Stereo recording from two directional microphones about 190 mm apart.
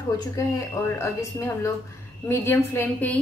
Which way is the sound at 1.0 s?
15° left (ahead or behind).